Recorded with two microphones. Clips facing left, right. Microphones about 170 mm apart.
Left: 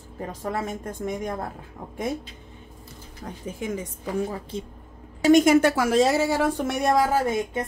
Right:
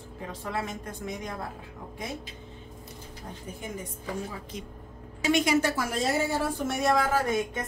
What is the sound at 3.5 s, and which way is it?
Speech, 90° left.